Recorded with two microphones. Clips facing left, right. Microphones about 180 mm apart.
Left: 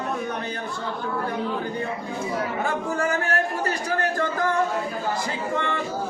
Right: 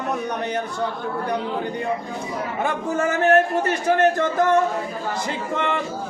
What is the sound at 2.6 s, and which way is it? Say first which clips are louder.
Speech: right 6 dB; 20° right (ahead or behind).